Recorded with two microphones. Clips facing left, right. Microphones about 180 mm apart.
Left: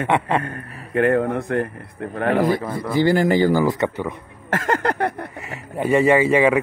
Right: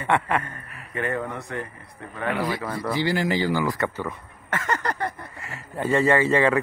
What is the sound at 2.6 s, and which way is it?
Speech, 20° left (ahead or behind).